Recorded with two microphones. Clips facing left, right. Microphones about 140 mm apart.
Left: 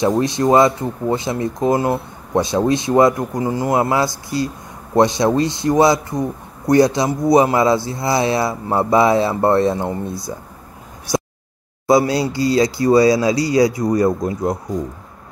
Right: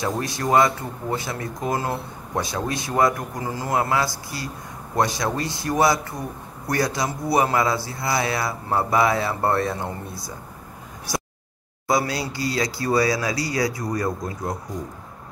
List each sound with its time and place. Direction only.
0.0 s speech: 25° left (ahead or behind)
11.9 s speech: 25° left (ahead or behind)